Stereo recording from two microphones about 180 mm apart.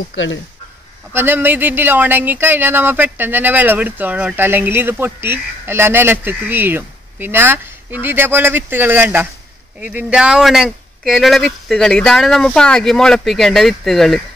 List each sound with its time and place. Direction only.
0.1 s speech: 90° left
1.1 s speech: 10° right (ahead or behind)